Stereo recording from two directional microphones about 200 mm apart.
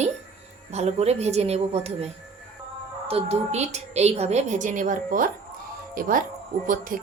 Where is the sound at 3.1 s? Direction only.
30° right (ahead or behind).